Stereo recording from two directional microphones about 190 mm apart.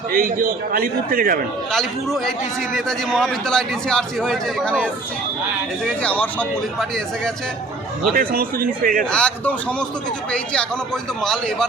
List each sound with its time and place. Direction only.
0.1 s a man's voice: 50° right (ahead or behind)
1.7 s a man's voice: centre (ahead or behind)
6.0 s a man's voice: 5° left (ahead or behind)
8.1 s a man's voice: 50° right (ahead or behind)
9.0 s a man's voice: 5° left (ahead or behind)